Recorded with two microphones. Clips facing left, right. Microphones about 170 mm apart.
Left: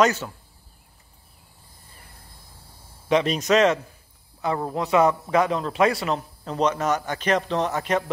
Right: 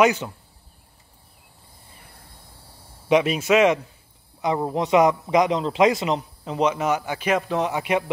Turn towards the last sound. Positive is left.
turn(degrees=-10)  # may be behind; listen again after turning